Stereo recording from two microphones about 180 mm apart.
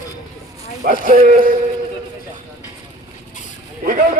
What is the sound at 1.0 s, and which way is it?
Speech, 50° right (ahead or behind).